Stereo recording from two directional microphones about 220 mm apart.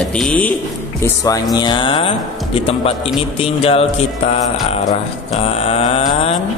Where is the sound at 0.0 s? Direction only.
5° left (ahead or behind).